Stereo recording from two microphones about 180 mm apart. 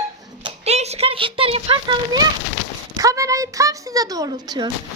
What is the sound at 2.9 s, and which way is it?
Speech, 20° right (ahead or behind).